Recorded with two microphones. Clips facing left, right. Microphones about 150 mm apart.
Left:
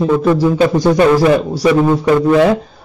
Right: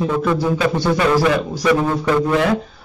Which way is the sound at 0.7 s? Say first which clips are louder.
Left 6 dB; 40° left (ahead or behind).